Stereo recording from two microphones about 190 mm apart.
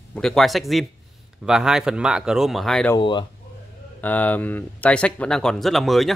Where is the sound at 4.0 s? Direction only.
10° left (ahead or behind).